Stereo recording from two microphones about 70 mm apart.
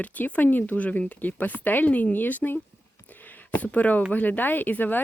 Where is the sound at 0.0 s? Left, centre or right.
Left.